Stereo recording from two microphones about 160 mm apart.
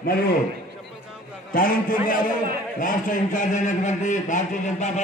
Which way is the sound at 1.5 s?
60° left (ahead or behind).